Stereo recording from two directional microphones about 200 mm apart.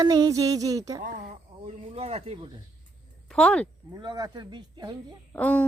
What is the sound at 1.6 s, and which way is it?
Speech, 30° right (ahead or behind).